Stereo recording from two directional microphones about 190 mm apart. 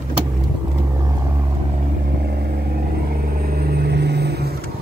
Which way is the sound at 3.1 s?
50° right (ahead or behind).